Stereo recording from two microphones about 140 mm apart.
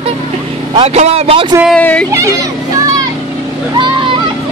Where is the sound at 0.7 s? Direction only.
45° right (ahead or behind).